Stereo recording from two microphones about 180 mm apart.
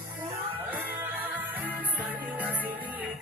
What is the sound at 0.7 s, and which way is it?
Music, 10° right (ahead or behind).